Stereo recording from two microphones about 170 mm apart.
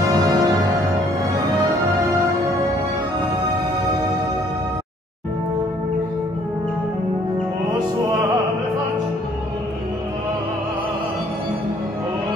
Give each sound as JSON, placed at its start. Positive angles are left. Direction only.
{"t": 0.1, "sound": "music", "side_deg": -20}